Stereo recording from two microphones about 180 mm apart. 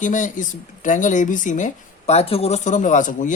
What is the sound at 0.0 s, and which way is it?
Speech, 45° left (ahead or behind).